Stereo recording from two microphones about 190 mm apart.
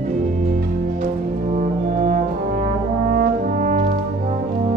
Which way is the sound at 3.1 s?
45° right (ahead or behind).